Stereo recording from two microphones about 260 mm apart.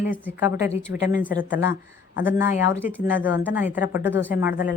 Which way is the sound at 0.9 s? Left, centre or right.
Left.